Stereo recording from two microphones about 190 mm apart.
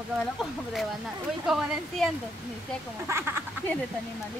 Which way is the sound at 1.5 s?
Centre (ahead or behind).